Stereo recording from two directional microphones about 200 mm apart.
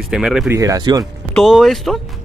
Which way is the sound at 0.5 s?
15° right (ahead or behind).